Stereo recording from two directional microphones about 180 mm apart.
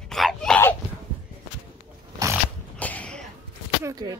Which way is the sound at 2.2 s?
20° right (ahead or behind).